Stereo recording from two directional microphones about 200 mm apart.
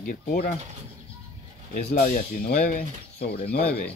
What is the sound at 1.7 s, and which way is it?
Speech, 45° left (ahead or behind).